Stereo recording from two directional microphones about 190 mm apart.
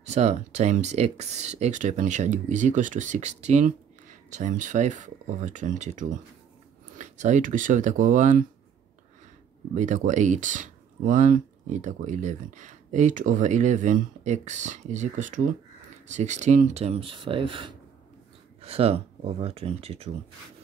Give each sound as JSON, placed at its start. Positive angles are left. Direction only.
{"t": 0.0, "sound": "speech", "side_deg": -35}
{"t": 9.8, "sound": "speech", "side_deg": -40}